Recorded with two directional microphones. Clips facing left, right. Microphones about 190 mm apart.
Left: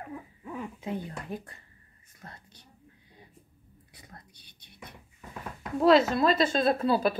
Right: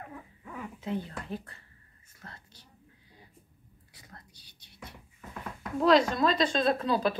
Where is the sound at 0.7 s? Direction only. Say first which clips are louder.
Even; 15° left (ahead or behind).